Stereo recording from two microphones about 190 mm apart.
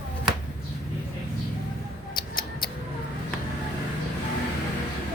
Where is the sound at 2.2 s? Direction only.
25° left (ahead or behind).